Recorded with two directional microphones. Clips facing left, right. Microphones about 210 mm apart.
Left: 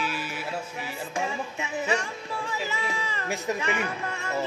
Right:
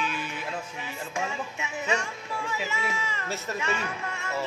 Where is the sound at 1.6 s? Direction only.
35° left (ahead or behind).